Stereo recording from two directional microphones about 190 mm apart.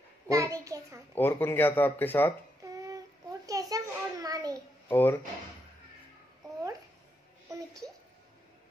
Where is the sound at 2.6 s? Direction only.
20° right (ahead or behind).